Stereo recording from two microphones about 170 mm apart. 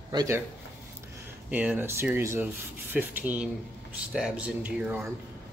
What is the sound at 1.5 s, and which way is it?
Speech, 10° right (ahead or behind).